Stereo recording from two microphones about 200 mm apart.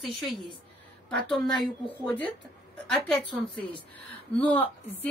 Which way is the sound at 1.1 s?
5° left (ahead or behind).